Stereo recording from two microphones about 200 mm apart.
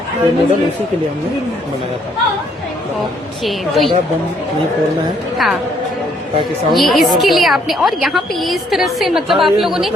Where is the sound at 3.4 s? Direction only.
Centre (ahead or behind).